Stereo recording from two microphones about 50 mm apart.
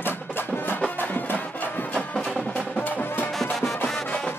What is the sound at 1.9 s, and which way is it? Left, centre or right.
Music, left.